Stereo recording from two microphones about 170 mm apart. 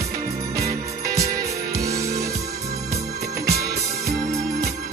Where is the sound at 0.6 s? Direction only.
20° right (ahead or behind).